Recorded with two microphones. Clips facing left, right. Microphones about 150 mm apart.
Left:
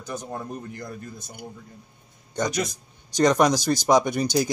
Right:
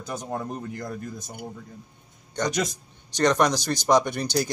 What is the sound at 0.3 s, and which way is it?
Speech, 70° right (ahead or behind).